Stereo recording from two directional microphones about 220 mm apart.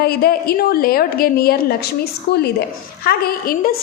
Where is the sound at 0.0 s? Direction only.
45° left (ahead or behind).